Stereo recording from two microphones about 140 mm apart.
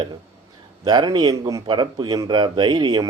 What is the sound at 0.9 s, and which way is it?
A man's voice, 30° right (ahead or behind).